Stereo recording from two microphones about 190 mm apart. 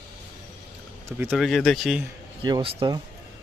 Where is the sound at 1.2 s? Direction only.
5° right (ahead or behind).